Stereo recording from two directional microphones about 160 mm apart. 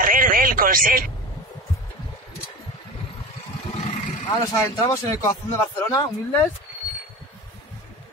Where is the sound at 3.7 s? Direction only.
40° left (ahead or behind).